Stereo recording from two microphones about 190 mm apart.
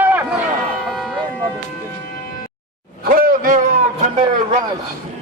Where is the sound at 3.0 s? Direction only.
50° right (ahead or behind).